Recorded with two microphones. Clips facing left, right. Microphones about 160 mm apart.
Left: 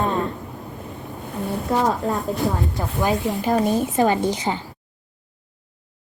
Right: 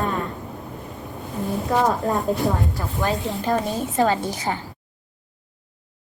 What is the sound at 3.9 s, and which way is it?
Speech, 20° left (ahead or behind).